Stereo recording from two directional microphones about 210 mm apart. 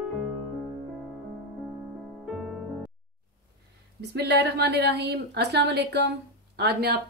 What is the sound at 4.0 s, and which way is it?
Speech, 55° right (ahead or behind).